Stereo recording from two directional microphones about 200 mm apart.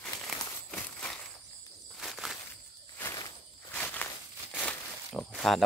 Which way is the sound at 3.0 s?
15° left (ahead or behind).